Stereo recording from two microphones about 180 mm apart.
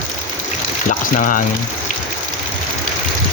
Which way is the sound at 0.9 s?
50° left (ahead or behind).